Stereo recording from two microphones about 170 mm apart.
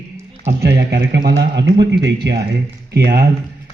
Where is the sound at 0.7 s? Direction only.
80° right.